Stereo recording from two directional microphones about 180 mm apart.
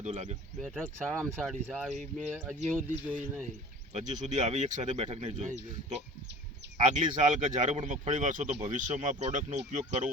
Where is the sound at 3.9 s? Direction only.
40° right (ahead or behind).